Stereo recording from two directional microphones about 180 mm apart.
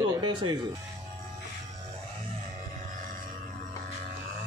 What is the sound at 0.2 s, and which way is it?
Music, 25° right (ahead or behind).